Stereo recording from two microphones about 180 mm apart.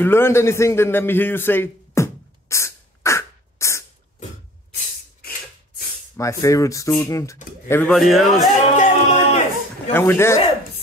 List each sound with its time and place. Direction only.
0.0 s a sound: 15° left (ahead or behind)
6.1 s speech: 15° left (ahead or behind)
7.9 s a man's voice: centre (ahead or behind)
8.7 s music: 45° left (ahead or behind)
9.9 s speech: 15° left (ahead or behind)